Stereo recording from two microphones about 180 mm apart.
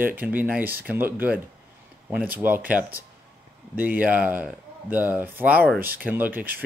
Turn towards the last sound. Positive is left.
turn(degrees=-10)  # may be behind; listen again after turning